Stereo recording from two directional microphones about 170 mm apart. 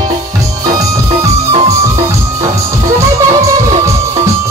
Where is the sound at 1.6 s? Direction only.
20° right (ahead or behind).